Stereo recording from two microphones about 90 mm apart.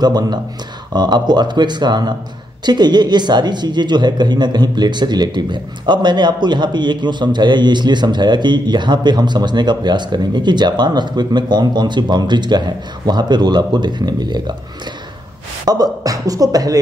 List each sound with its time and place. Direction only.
0.0 s speech: 50° right (ahead or behind)
15.6 s speech: 45° right (ahead or behind)